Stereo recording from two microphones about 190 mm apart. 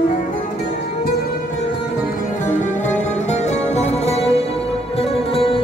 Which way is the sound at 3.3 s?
35° left (ahead or behind).